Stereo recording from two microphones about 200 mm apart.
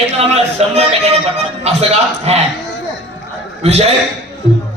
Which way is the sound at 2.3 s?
30° right (ahead or behind).